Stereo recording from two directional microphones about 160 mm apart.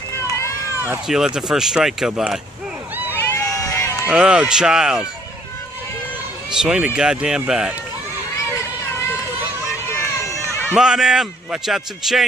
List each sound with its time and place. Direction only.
1.0 s a man's voice: 5° right (ahead or behind)
3.1 s run: 15° left (ahead or behind)
4.1 s a man's voice: 5° right (ahead or behind)
6.5 s a man's voice: 5° right (ahead or behind)
10.7 s a man's voice: 5° right (ahead or behind)